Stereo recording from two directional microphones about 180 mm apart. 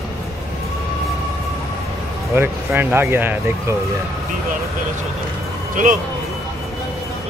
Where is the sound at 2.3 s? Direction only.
10° right (ahead or behind).